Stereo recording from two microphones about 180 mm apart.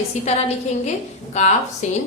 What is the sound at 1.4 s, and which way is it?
Speech, 40° left (ahead or behind).